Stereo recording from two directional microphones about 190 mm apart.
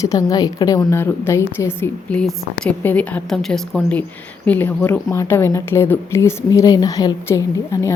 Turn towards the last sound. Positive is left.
turn(degrees=15)  # may be behind; listen again after turning